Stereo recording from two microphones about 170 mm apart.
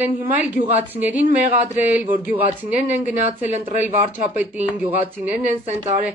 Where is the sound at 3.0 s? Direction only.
45° left (ahead or behind).